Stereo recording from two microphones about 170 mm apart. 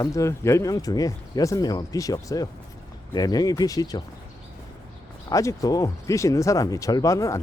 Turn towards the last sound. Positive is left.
turn(degrees=20)  # may be behind; listen again after turning